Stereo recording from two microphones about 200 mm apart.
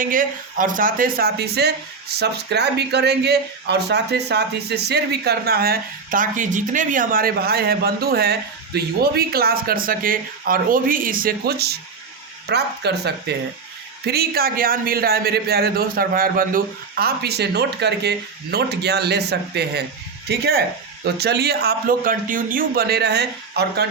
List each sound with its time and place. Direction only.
0.0 s speech: 40° right (ahead or behind)